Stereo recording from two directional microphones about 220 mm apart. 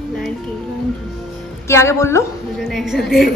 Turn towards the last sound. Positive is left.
turn(degrees=0)  # may be behind; listen again after turning